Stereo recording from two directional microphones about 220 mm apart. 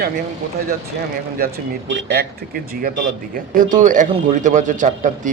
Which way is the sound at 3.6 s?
35° right (ahead or behind).